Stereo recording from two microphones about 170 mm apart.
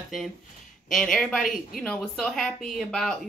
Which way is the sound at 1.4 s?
55° left (ahead or behind).